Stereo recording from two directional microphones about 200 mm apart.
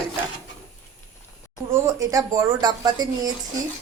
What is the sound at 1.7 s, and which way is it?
A woman's voice, 15° right (ahead or behind).